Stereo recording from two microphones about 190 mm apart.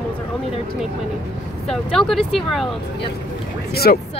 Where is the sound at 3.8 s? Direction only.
50° left (ahead or behind).